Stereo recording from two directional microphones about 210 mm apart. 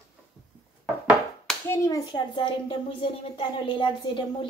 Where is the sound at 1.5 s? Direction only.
10° left (ahead or behind).